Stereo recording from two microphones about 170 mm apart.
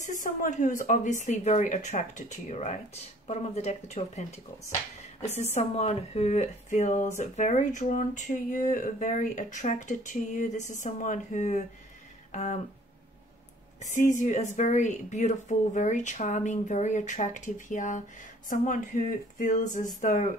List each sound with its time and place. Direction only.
0.0 s speech: 50° left (ahead or behind)
12.3 s a sound: 45° left (ahead or behind)
13.7 s speech: 45° left (ahead or behind)